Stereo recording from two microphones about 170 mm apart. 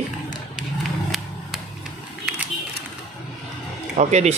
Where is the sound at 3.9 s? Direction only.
40° right (ahead or behind).